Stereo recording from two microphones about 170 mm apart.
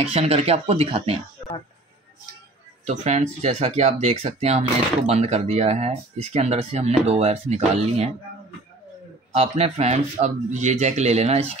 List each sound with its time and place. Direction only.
0.0 s speech: 35° right (ahead or behind)
2.8 s speech: 40° right (ahead or behind)
9.3 s speech: 35° right (ahead or behind)